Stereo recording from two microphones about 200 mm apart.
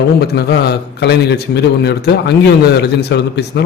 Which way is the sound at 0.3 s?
55° left (ahead or behind).